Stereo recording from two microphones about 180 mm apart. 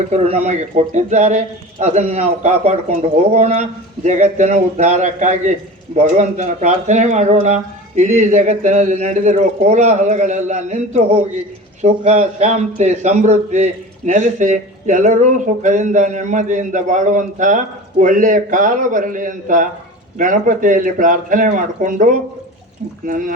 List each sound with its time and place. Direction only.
0.1 s a man's voice: 35° right (ahead or behind)